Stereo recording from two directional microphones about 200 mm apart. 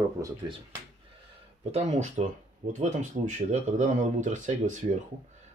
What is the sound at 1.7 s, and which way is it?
Speech, 35° right (ahead or behind).